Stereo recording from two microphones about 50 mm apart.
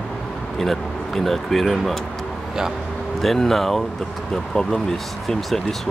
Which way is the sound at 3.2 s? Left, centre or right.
Centre.